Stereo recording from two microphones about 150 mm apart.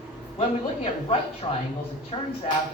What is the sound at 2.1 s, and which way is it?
Speech, 30° left (ahead or behind).